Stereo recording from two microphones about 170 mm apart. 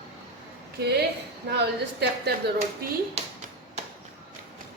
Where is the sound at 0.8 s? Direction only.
75° right (ahead or behind).